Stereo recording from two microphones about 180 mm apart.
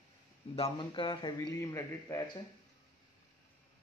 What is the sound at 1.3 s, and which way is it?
Speech, 15° left (ahead or behind).